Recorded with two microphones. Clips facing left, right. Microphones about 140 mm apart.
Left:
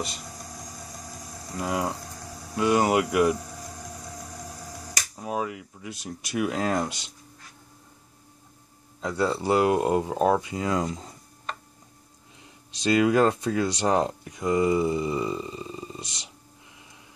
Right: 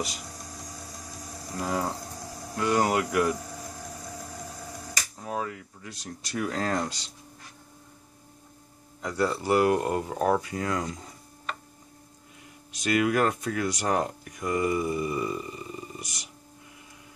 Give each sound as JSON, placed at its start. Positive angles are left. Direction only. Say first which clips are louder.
{"t": 1.5, "sound": "speech", "louder": "left 1 dB", "side_deg": 5}
{"t": 5.1, "sound": "speech", "louder": "left 3 dB", "side_deg": 15}
{"t": 9.0, "sound": "speech", "louder": "left 2 dB", "side_deg": 20}
{"t": 12.8, "sound": "speech", "louder": "left 4 dB", "side_deg": 25}